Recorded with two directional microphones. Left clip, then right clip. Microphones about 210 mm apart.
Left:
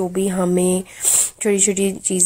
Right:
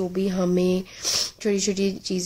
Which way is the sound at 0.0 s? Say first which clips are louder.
Left 5 dB; centre (ahead or behind).